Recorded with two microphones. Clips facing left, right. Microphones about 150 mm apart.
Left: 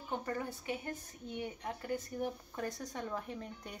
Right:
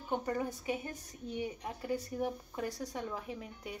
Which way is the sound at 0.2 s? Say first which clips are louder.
Right 3 dB; 20° right (ahead or behind).